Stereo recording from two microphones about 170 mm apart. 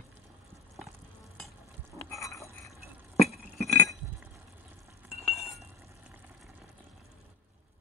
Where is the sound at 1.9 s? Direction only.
20° left (ahead or behind).